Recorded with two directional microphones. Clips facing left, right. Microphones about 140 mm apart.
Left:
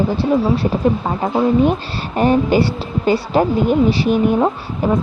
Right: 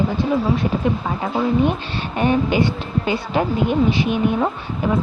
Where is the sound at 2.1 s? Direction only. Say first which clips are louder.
Left 4 dB; 40° left (ahead or behind).